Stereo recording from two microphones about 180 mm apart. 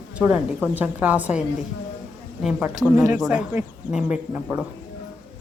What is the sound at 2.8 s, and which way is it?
Speech, 15° right (ahead or behind).